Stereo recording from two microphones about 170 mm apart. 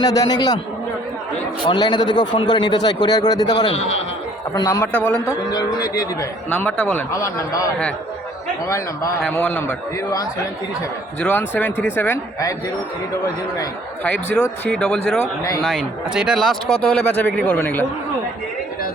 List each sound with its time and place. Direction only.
0.0 s a man's voice: 25° left (ahead or behind)
1.6 s a man's voice: 25° left (ahead or behind)
4.9 s speech: 5° left (ahead or behind)
5.5 s a man's voice: 20° left (ahead or behind)
6.5 s speech: 10° left (ahead or behind)
7.1 s a man's voice: 20° left (ahead or behind)
11.2 s speech: 10° left (ahead or behind)
14.0 s speech: 5° left (ahead or behind)